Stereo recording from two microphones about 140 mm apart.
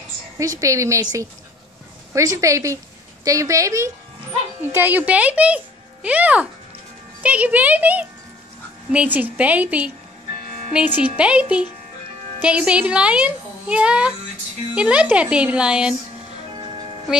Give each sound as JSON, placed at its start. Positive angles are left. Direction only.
{"t": 0.4, "sound": "a woman's voice", "side_deg": -20}
{"t": 2.1, "sound": "a woman's voice", "side_deg": -20}
{"t": 16.5, "sound": "music", "side_deg": -35}
{"t": 17.1, "sound": "speech", "side_deg": -5}